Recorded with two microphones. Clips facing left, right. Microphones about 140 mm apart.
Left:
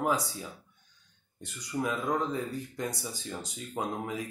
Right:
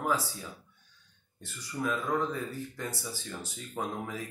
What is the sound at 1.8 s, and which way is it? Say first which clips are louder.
Speech: right 1 dB; 15° left (ahead or behind).